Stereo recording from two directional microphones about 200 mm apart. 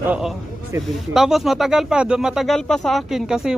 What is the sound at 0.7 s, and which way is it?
Speech, 15° right (ahead or behind).